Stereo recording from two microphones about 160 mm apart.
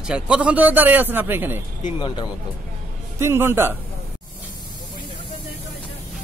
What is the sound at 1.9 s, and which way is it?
Speech, 30° left (ahead or behind).